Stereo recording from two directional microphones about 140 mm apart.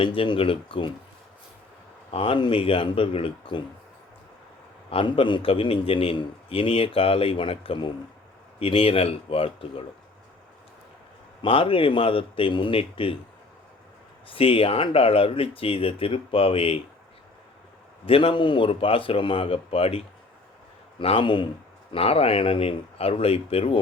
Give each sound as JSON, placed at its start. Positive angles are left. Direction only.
{"t": 0.0, "sound": "a man's voice", "side_deg": 40}
{"t": 2.0, "sound": "a man's voice", "side_deg": 40}
{"t": 4.9, "sound": "a man's voice", "side_deg": 40}
{"t": 11.4, "sound": "a man's voice", "side_deg": 40}
{"t": 14.3, "sound": "a man's voice", "side_deg": 40}
{"t": 18.0, "sound": "a man's voice", "side_deg": 40}
{"t": 21.0, "sound": "a man's voice", "side_deg": 40}